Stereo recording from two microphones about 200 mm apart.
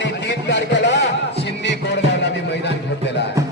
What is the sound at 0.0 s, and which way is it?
Music, 65° left (ahead or behind).